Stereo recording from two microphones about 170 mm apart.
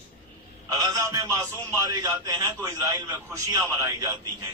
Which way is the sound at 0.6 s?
20° right (ahead or behind).